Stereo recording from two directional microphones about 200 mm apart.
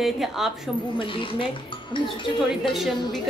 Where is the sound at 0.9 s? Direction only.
25° left (ahead or behind).